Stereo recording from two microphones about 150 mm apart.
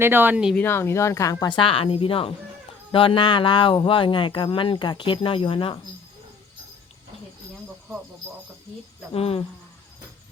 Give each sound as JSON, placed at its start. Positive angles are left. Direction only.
{"t": 0.0, "sound": "speech", "side_deg": -15}
{"t": 0.5, "sound": "speech", "side_deg": 15}
{"t": 9.1, "sound": "speech", "side_deg": 40}